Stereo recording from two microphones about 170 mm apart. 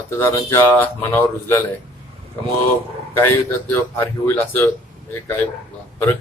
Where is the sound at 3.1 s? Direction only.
10° left (ahead or behind).